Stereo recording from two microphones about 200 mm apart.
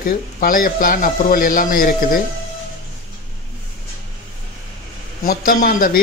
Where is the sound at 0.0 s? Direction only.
45° left (ahead or behind).